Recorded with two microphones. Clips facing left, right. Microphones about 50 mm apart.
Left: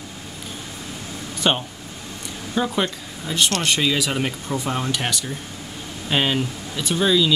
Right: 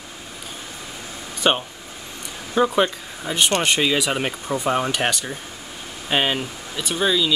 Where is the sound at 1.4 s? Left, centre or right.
Centre.